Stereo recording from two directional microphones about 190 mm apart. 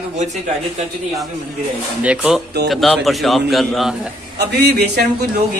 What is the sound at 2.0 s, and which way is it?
A man's voice, 5° right (ahead or behind).